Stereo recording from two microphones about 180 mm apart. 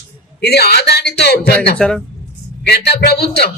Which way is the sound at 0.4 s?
60° left (ahead or behind).